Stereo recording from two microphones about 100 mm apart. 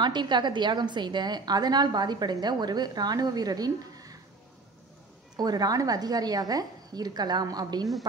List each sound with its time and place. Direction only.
0.0 s a woman's voice: 45° right (ahead or behind)
5.3 s a woman's voice: 40° right (ahead or behind)